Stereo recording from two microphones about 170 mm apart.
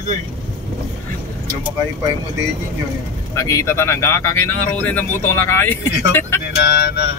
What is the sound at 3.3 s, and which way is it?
Speech, 20° left (ahead or behind).